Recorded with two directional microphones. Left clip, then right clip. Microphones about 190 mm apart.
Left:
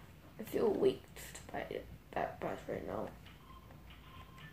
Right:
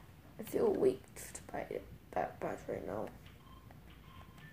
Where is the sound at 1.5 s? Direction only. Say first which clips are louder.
Right 1 dB; 25° right (ahead or behind).